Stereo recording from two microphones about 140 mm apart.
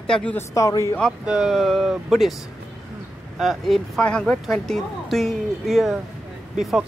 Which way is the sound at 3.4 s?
Centre (ahead or behind).